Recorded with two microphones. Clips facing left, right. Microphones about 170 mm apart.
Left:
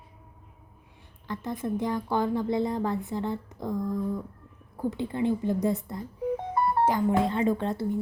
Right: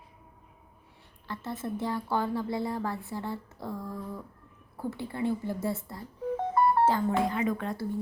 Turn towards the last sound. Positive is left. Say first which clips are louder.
# left 4 dB
turn(degrees=20)  # may be behind; listen again after turning